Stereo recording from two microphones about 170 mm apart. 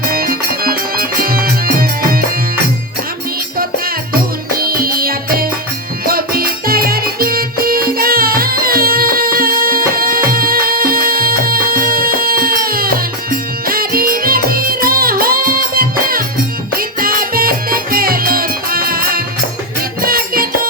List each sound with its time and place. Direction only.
0.0 s music: 60° right (ahead or behind)
4.5 s music: 60° right (ahead or behind)